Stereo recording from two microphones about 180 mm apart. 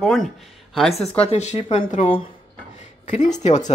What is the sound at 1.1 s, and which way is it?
Speech, 35° left (ahead or behind).